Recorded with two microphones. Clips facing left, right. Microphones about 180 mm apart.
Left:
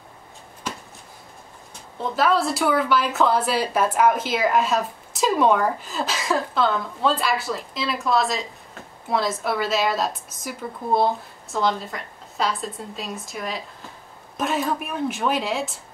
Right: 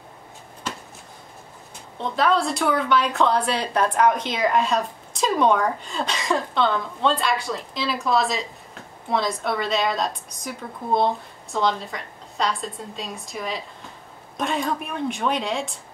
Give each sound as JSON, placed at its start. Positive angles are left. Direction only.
{"t": 2.0, "sound": "a woman's voice", "side_deg": 5}